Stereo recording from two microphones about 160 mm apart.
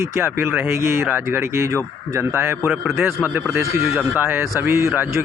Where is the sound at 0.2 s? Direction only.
10° right (ahead or behind).